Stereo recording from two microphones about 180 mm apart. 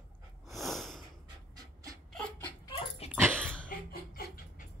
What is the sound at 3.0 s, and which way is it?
Dog, 35° left (ahead or behind).